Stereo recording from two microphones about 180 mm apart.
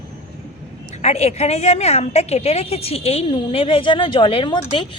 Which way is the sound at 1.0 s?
35° left (ahead or behind).